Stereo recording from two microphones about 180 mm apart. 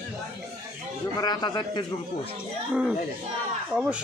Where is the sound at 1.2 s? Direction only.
25° left (ahead or behind).